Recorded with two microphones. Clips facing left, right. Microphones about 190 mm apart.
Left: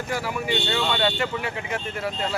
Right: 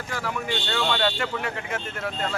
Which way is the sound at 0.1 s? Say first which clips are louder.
Left 2 dB; 10° left (ahead or behind).